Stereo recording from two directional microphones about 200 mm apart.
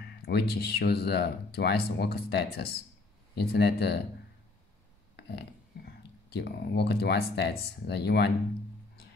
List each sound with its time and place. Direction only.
0.0 s speech: 55° left (ahead or behind)
5.1 s a sound: 55° left (ahead or behind)
6.3 s speech: 55° left (ahead or behind)